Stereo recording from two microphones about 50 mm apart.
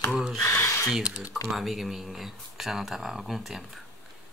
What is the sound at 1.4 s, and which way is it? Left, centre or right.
Speech, centre.